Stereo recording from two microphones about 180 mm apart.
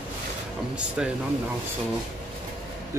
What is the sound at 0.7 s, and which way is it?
Speech, 5° right (ahead or behind).